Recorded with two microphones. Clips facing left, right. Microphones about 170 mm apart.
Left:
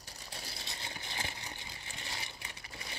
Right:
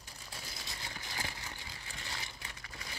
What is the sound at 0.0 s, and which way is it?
Vehicle, 35° left (ahead or behind).